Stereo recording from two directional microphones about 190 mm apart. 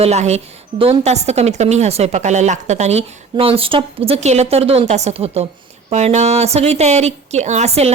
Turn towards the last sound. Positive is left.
turn(degrees=-35)  # may be behind; listen again after turning